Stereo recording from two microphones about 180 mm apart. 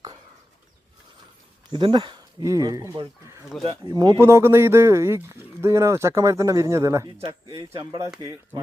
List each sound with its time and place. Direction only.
1.7 s speech: 25° right (ahead or behind)